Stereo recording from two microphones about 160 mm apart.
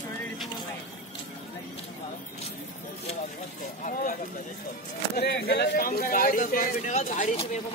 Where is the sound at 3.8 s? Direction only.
55° left (ahead or behind).